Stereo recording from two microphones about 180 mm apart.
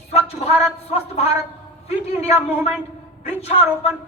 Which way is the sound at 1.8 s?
35° left (ahead or behind).